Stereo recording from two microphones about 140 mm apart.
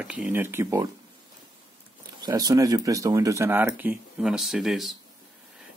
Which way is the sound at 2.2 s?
30° right (ahead or behind).